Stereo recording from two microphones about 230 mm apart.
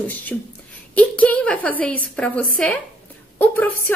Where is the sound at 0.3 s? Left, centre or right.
Centre.